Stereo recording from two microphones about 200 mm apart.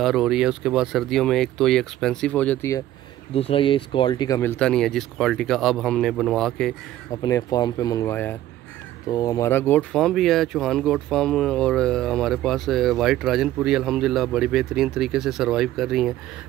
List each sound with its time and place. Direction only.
0.0 s speech: centre (ahead or behind)
3.3 s speech: 30° left (ahead or behind); by 6.7 s 5° left (ahead or behind)
7.1 s speech: 15° left (ahead or behind); by 16.1 s centre (ahead or behind)